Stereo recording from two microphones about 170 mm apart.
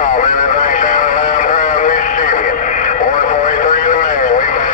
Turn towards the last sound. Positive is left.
turn(degrees=50)  # may be behind; listen again after turning